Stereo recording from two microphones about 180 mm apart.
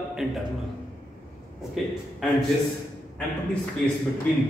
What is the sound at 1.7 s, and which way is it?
Speech, centre (ahead or behind).